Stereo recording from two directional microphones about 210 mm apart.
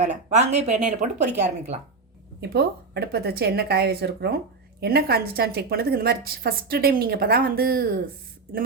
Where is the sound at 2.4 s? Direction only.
50° right (ahead or behind).